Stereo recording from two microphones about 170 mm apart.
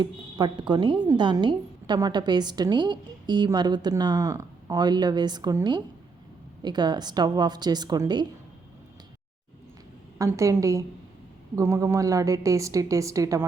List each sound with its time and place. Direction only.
0.0 s speech: 25° right (ahead or behind)
10.2 s speech: 20° right (ahead or behind)